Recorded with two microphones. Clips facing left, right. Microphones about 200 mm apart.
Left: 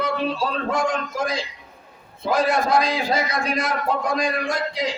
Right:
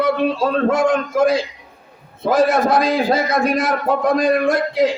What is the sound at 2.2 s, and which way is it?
Speech, 55° right (ahead or behind).